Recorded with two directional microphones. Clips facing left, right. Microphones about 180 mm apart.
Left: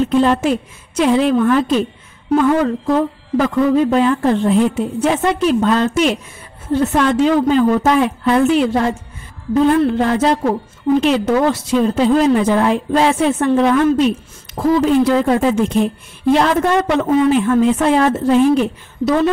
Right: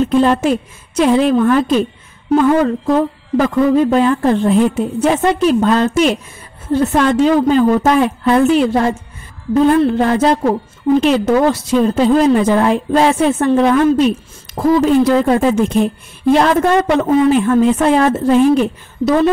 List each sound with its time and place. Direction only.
0.1 s speech: 40° right (ahead or behind)
9.9 s a woman's voice: 40° right (ahead or behind)